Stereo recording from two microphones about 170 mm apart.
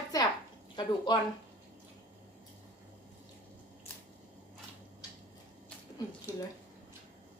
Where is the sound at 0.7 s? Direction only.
25° left (ahead or behind).